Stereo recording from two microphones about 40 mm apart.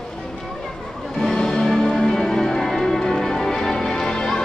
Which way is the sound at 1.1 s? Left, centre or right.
Centre.